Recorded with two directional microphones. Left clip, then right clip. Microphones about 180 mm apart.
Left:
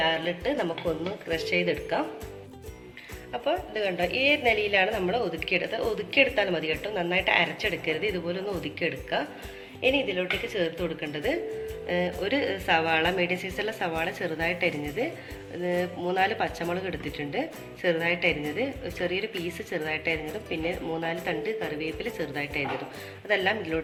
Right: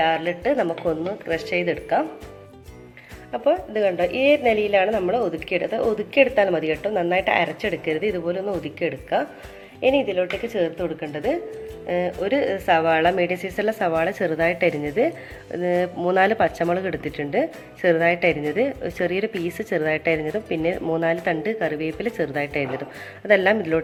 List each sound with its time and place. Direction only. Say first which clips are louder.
0.0 s a woman's voice: right 5 dB; 40° right (ahead or behind)
3.3 s a woman's voice: right 8 dB; 40° right (ahead or behind)